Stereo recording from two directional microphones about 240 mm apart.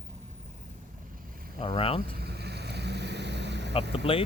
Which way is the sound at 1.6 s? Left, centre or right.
Left.